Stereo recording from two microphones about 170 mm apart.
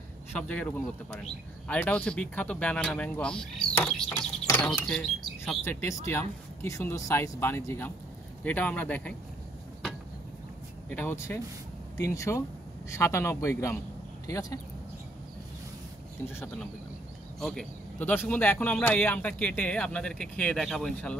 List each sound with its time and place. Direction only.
0.3 s a man's voice: 10° left (ahead or behind)
5.6 s a man's voice: 15° left (ahead or behind)
10.9 s a man's voice: 10° left (ahead or behind)
17.4 s a man's voice: 5° left (ahead or behind)